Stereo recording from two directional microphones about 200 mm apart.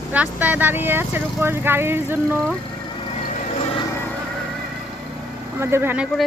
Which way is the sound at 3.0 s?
25° left (ahead or behind).